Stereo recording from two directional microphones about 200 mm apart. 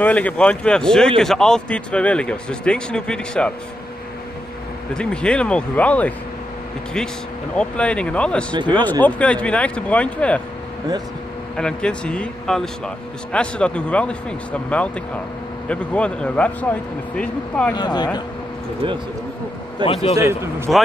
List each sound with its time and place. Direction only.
0.0 s speech: 5° left (ahead or behind)
4.9 s speech: 5° left (ahead or behind)
7.5 s speech: 5° left (ahead or behind)
11.5 s speech: 5° left (ahead or behind)
17.7 s speech: 20° left (ahead or behind)
19.8 s speech: 30° left (ahead or behind)
20.2 s a man's voice: 10° right (ahead or behind)